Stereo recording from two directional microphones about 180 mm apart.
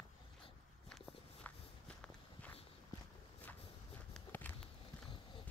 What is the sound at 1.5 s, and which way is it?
Walk, 5° left (ahead or behind).